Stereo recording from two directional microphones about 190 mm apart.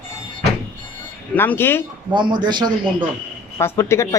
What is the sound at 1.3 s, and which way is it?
Speech, 10° left (ahead or behind).